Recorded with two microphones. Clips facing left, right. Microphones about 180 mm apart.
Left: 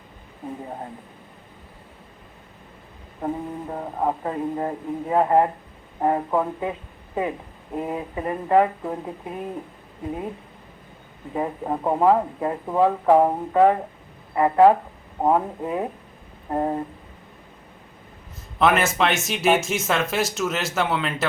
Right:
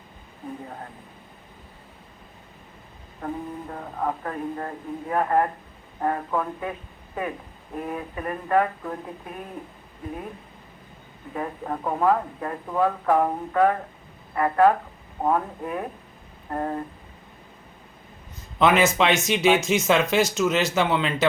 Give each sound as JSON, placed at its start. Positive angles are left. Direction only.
{"t": 3.2, "sound": "speech", "side_deg": 25}
{"t": 7.8, "sound": "speech", "side_deg": 20}
{"t": 11.3, "sound": "speech", "side_deg": 20}
{"t": 18.6, "sound": "speech", "side_deg": 5}